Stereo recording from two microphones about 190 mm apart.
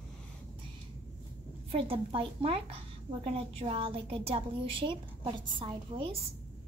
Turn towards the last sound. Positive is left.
turn(degrees=-25)  # may be behind; listen again after turning